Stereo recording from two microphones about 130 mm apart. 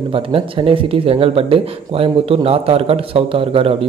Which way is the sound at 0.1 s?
45° right (ahead or behind).